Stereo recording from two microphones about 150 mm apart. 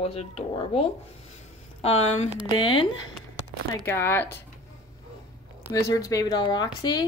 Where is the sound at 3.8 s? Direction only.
15° left (ahead or behind).